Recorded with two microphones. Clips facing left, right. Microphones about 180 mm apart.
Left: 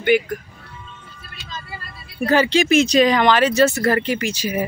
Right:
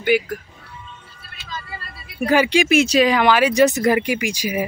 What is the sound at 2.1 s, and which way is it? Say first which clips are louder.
Speech: even; 10° right (ahead or behind).